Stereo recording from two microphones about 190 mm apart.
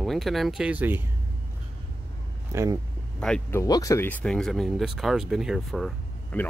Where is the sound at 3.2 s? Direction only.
5° left (ahead or behind).